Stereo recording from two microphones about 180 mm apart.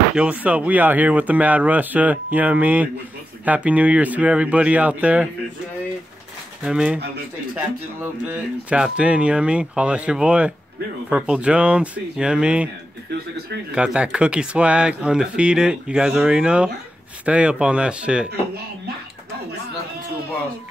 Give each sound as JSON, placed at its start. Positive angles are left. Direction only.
{"t": 0.1, "sound": "speech", "side_deg": -5}
{"t": 6.6, "sound": "speech", "side_deg": -5}
{"t": 13.1, "sound": "speech", "side_deg": -65}
{"t": 13.7, "sound": "speech", "side_deg": -5}